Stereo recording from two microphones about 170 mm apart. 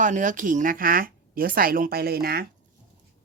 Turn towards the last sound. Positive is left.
turn(degrees=-65)  # may be behind; listen again after turning